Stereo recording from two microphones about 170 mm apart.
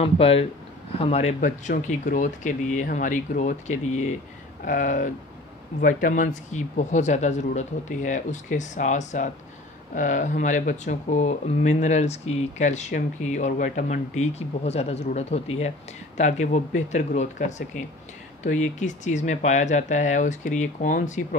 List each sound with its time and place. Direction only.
0.0 s speech: 35° left (ahead or behind)
1.4 s speech: 50° left (ahead or behind)